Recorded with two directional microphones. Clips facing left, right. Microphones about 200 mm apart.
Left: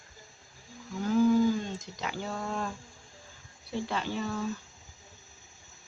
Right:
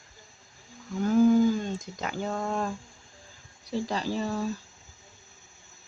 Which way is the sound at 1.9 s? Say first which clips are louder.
Right 3 dB; 45° right (ahead or behind).